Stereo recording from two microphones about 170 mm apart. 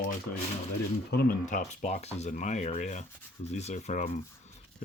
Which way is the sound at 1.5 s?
45° left (ahead or behind).